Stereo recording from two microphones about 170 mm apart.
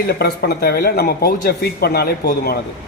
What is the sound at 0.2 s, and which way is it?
Speech, 70° left (ahead or behind).